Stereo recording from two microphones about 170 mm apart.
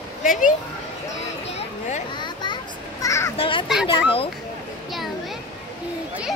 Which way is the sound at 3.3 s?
30° left (ahead or behind).